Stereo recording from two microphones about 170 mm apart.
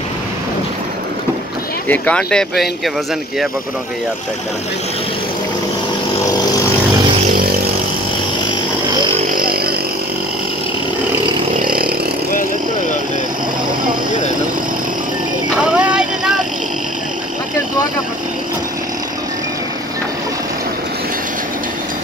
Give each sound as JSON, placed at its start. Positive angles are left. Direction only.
{"t": 1.9, "sound": "speech", "side_deg": 5}
{"t": 9.4, "sound": "chainsaw", "side_deg": -60}
{"t": 11.6, "sound": "a sound", "side_deg": -60}
{"t": 15.5, "sound": "vehicle", "side_deg": -5}